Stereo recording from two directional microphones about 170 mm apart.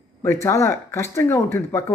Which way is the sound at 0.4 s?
15° left (ahead or behind).